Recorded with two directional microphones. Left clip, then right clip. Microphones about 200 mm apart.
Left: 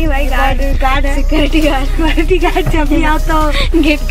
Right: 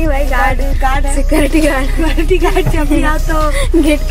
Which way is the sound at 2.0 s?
20° left (ahead or behind).